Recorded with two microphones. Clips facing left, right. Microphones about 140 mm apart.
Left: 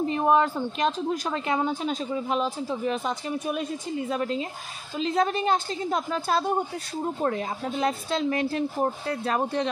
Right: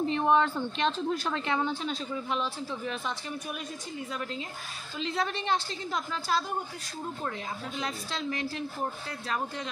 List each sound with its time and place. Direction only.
0.0 s speech: 5° left (ahead or behind)
1.6 s speech: 45° left (ahead or behind)